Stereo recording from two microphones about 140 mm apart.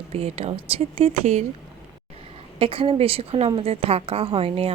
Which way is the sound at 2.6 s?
40° right (ahead or behind).